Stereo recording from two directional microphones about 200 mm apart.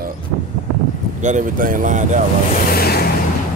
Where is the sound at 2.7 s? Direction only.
50° left (ahead or behind).